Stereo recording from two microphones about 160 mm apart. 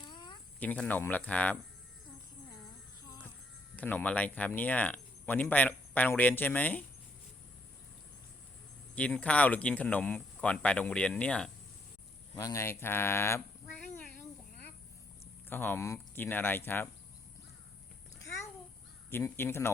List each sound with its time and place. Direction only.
0.0 s a sound: 30° left (ahead or behind)
0.6 s speech: 10° left (ahead or behind)
3.8 s speech: 10° left (ahead or behind)
9.0 s speech: 10° left (ahead or behind)
12.4 s speech: 20° left (ahead or behind)
15.4 s speech: 15° left (ahead or behind)
19.1 s speech: 15° left (ahead or behind)